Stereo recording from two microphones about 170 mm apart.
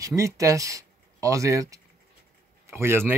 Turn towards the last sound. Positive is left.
turn(degrees=-15)  # may be behind; listen again after turning